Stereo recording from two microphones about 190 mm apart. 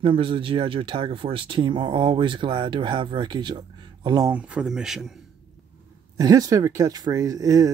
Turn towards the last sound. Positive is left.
turn(degrees=-20)  # may be behind; listen again after turning